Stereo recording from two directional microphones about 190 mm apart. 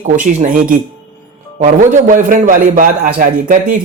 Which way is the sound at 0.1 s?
40° right (ahead or behind).